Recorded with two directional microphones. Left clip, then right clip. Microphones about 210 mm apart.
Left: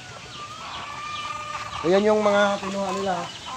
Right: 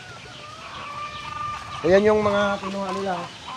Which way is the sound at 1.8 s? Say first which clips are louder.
Right 2 dB; 35° right (ahead or behind).